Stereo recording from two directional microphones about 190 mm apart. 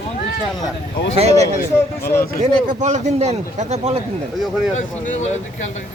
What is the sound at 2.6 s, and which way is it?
A man's voice, 40° right (ahead or behind).